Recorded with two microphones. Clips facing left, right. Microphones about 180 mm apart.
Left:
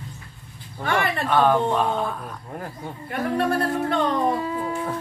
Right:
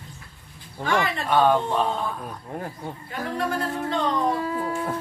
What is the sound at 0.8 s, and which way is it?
Speech, 55° left (ahead or behind).